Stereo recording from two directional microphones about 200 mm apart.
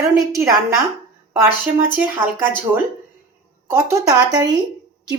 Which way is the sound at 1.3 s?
10° right (ahead or behind).